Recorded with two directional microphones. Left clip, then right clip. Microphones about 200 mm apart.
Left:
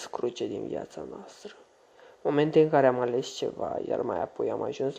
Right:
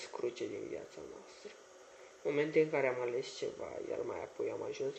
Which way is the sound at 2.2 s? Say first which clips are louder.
Left 9 dB; 20° left (ahead or behind).